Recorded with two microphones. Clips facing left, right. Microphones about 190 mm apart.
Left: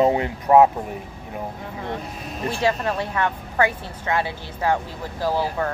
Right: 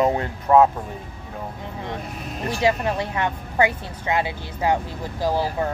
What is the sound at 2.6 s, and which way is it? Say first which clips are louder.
A woman's voice: right 2 dB; 15° right (ahead or behind).